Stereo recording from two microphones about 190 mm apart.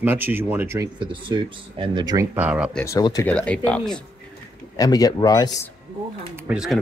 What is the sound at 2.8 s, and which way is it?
Speech, 15° left (ahead or behind).